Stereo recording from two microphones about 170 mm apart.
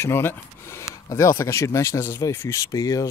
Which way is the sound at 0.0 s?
15° left (ahead or behind).